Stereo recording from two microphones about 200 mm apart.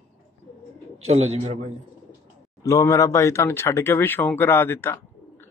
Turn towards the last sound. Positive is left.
turn(degrees=10)  # may be behind; listen again after turning